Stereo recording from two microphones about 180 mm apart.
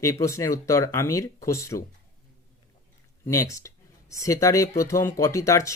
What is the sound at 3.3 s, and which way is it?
Speech, 15° left (ahead or behind).